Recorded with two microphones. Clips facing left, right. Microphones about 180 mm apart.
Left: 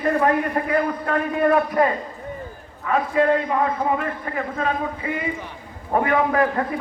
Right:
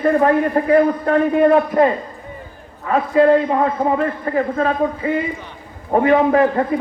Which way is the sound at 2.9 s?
35° right (ahead or behind).